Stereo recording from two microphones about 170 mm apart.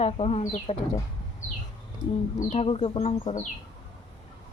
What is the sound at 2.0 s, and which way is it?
Speech, 25° right (ahead or behind).